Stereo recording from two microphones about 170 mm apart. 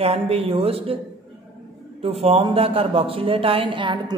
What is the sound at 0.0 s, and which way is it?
Speech, 35° right (ahead or behind).